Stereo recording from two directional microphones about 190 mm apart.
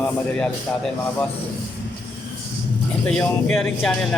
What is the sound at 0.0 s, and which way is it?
Speech, 5° left (ahead or behind).